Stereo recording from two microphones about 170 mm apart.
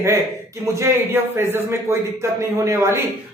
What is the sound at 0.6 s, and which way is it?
A man's voice, 15° right (ahead or behind).